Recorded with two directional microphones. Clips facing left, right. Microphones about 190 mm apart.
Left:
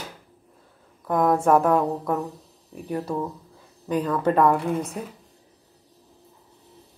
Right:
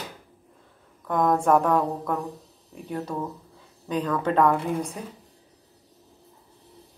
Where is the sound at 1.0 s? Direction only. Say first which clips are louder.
Left 2 dB; 10° left (ahead or behind).